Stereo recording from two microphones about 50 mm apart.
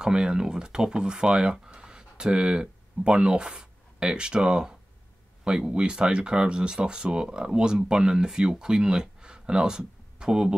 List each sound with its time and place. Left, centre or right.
0.0 s speech: centre